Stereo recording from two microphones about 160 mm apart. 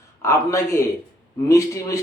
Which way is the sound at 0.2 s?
15° left (ahead or behind).